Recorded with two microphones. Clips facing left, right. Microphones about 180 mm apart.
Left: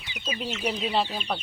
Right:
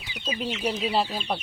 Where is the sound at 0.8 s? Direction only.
5° right (ahead or behind).